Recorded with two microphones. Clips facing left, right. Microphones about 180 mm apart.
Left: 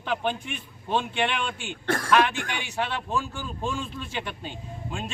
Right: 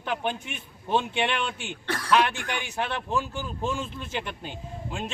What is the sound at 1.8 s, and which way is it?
Speech, 50° left (ahead or behind).